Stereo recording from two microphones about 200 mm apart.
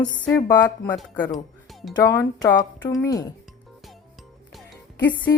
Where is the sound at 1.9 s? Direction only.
20° left (ahead or behind).